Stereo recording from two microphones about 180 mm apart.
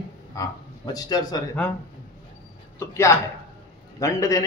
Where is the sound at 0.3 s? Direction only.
20° left (ahead or behind).